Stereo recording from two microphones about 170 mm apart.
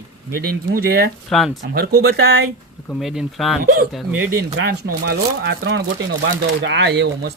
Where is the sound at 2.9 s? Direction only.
Centre (ahead or behind).